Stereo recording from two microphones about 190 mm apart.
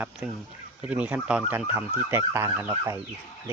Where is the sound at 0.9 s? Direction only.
5° right (ahead or behind).